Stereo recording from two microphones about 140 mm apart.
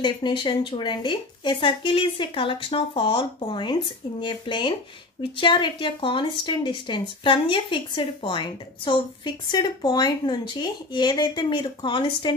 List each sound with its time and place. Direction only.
0.0 s speech: 35° left (ahead or behind)